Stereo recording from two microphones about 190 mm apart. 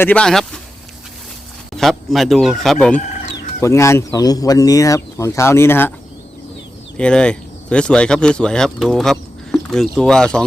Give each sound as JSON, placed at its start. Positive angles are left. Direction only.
{"t": 0.0, "sound": "speech", "side_deg": 5}
{"t": 1.7, "sound": "speech", "side_deg": 0}
{"t": 3.6, "sound": "speech", "side_deg": 15}
{"t": 6.9, "sound": "speech", "side_deg": 5}